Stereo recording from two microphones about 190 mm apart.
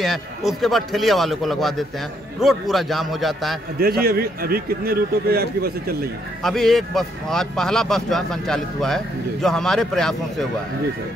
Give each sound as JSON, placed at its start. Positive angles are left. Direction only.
{"t": 0.0, "sound": "speech", "side_deg": 0}
{"t": 3.8, "sound": "a man's voice", "side_deg": -50}
{"t": 6.4, "sound": "speech", "side_deg": 0}